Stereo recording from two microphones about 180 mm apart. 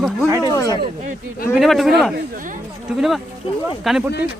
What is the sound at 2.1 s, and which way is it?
Speech, 50° right (ahead or behind).